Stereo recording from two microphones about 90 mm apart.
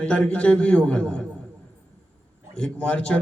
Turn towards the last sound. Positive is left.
turn(degrees=15)  # may be behind; listen again after turning